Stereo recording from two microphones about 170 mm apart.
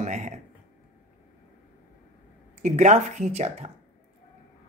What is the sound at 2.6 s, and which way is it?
Speech, 45° right (ahead or behind).